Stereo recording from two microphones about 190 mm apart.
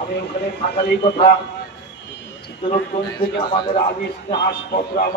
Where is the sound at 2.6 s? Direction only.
50° left (ahead or behind).